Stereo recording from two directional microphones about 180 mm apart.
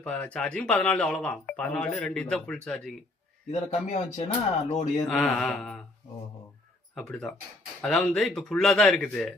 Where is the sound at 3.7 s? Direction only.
40° left (ahead or behind).